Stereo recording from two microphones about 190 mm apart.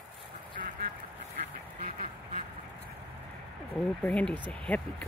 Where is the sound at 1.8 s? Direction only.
50° right (ahead or behind).